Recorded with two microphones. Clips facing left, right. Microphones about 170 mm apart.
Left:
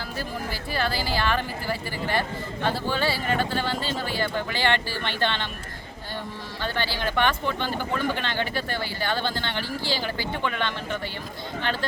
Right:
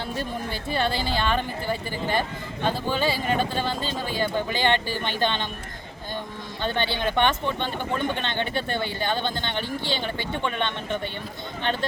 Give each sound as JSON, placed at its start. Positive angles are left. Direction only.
{"t": 0.2, "sound": "speech", "side_deg": -25}
{"t": 6.6, "sound": "speech", "side_deg": -20}